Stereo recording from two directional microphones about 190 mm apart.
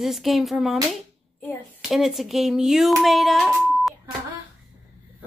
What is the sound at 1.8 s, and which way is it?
Speech, centre (ahead or behind).